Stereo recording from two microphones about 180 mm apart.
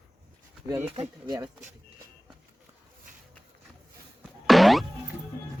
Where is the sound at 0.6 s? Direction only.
15° right (ahead or behind).